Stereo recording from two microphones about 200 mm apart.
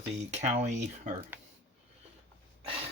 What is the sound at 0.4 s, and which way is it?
Speech, 35° right (ahead or behind).